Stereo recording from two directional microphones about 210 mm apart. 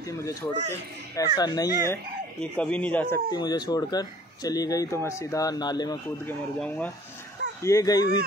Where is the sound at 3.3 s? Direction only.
20° left (ahead or behind).